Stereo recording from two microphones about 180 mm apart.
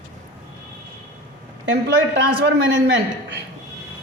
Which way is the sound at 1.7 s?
70° right (ahead or behind).